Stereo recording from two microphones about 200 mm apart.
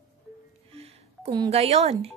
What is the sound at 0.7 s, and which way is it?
Music, 30° right (ahead or behind).